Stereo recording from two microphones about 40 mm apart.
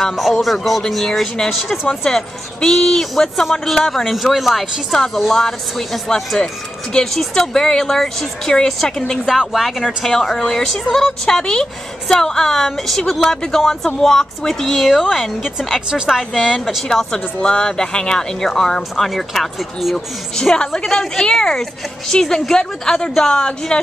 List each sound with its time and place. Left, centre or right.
0.3 s speech: centre
1.9 s a woman's voice: centre
4.9 s a woman's voice: centre
9.2 s speech: centre
9.5 s speech: centre
9.8 s a woman's voice: centre
16.8 s a woman's voice: centre
20.3 s a woman's voice: centre